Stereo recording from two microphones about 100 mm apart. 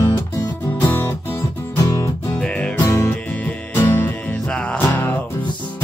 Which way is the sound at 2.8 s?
30° left (ahead or behind).